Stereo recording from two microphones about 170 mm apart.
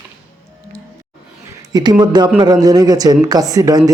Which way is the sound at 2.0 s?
25° right (ahead or behind).